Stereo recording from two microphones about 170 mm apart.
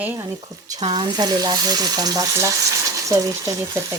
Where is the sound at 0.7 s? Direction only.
25° right (ahead or behind).